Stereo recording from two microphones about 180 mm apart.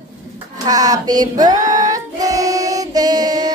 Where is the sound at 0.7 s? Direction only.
20° right (ahead or behind).